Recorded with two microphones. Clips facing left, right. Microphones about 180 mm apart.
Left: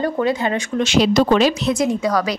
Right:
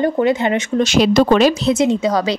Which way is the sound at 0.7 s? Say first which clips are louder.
Right 2 dB; 40° right (ahead or behind).